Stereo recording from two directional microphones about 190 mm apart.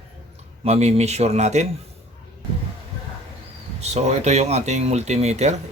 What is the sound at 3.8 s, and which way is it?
Speech, 35° right (ahead or behind).